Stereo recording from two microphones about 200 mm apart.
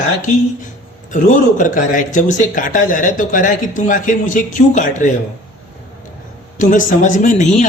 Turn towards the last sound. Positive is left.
turn(degrees=40)  # may be behind; listen again after turning